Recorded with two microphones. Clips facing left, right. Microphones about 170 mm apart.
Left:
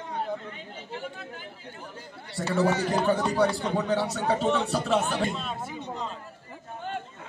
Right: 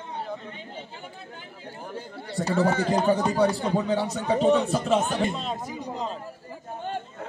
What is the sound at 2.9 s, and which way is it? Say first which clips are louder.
Speech: right 2 dB; 15° right (ahead or behind).